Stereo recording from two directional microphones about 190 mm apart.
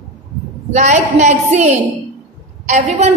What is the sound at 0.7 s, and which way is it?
A woman's voice, 40° right (ahead or behind).